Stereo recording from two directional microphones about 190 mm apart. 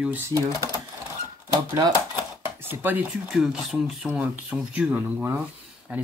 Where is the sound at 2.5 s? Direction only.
10° right (ahead or behind).